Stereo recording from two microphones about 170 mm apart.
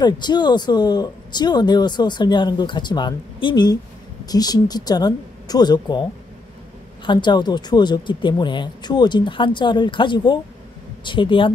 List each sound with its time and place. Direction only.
0.0 s speech: 25° left (ahead or behind)
7.1 s speech: 25° left (ahead or behind)